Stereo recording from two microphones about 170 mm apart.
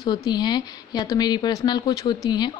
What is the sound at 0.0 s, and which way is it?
Speech, 25° left (ahead or behind).